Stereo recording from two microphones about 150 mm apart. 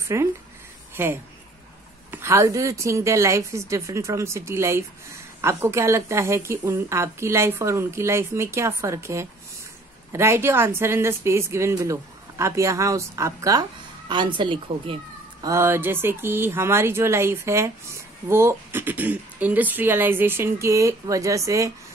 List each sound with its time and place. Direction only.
0.0 s a woman's voice: 20° right (ahead or behind); by 15.0 s 35° right (ahead or behind)
15.4 s speech: 15° right (ahead or behind)